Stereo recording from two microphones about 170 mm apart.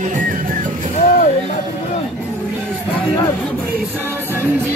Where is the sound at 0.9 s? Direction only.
45° left (ahead or behind).